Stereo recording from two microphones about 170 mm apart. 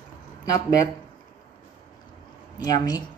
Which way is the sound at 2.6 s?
20° left (ahead or behind).